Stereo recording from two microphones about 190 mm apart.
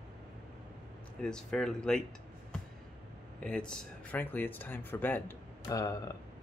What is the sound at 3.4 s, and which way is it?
Speech, 5° left (ahead or behind).